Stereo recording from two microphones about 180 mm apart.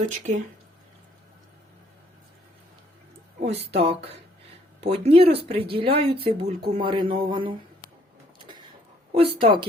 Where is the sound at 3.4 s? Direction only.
35° right (ahead or behind).